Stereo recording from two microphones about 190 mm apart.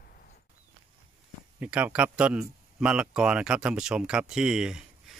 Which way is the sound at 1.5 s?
5° right (ahead or behind).